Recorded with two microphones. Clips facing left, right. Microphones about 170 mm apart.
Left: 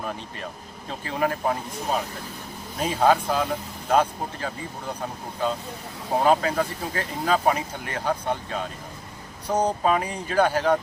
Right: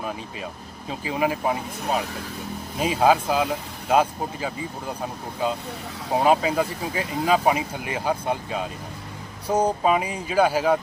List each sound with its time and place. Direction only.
0.9 s speech: 5° right (ahead or behind)
6.1 s speech: 10° right (ahead or behind)